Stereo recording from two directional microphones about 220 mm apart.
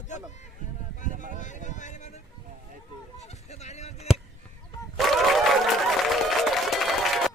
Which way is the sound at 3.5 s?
30° left (ahead or behind).